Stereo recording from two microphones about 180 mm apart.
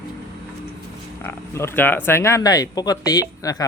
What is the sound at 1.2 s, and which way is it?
Speech, 15° left (ahead or behind).